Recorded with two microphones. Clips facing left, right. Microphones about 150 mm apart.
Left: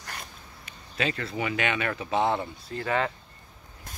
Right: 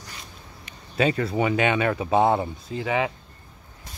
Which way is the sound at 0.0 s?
60° left (ahead or behind).